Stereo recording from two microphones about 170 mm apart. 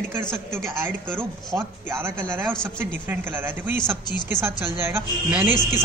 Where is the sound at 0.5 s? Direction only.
15° right (ahead or behind).